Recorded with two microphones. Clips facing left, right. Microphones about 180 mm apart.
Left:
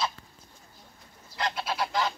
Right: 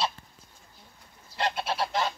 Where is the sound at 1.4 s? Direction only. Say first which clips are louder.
Right 2 dB; 30° right (ahead or behind).